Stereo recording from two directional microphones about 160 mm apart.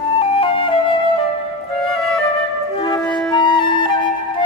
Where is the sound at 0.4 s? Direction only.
35° left (ahead or behind).